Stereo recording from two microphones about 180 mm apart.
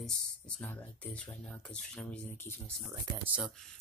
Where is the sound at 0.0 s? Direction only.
5° left (ahead or behind).